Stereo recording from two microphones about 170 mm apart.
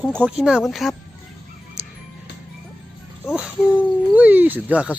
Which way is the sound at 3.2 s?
5° right (ahead or behind).